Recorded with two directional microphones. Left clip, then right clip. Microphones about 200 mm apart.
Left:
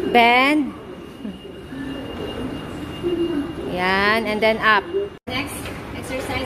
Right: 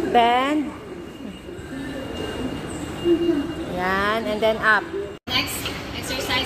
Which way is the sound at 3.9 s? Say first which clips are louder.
Left 4 dB; 20° left (ahead or behind).